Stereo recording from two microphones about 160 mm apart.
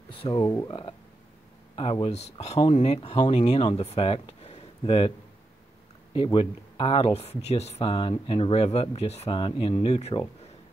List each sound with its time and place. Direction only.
0.2 s speech: 30° left (ahead or behind)
6.1 s speech: 35° left (ahead or behind)